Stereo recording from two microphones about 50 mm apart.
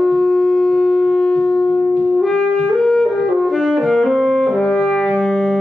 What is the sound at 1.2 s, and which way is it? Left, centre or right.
Shofar, centre.